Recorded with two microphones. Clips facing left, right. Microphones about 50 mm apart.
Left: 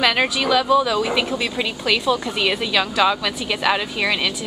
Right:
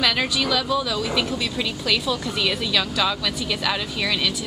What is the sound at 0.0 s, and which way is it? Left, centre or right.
A woman's voice, left.